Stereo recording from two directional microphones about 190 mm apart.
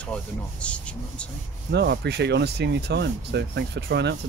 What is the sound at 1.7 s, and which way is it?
Speech, 65° right (ahead or behind).